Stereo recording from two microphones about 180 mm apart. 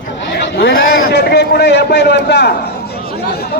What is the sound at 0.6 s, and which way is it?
A man's voice, 60° left (ahead or behind).